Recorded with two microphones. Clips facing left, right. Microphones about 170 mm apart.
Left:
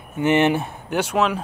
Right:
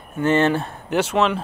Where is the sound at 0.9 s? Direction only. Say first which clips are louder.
Right 1 dB; centre (ahead or behind).